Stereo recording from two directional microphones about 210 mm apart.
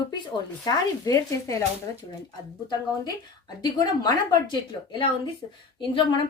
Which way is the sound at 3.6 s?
20° left (ahead or behind).